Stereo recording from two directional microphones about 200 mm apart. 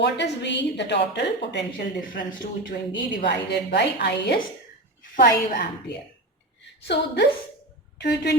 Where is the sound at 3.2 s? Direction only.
55° left (ahead or behind).